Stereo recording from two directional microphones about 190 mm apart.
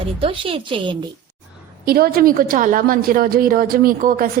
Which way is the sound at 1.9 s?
50° right (ahead or behind).